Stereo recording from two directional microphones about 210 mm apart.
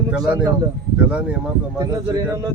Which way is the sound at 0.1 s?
5° right (ahead or behind).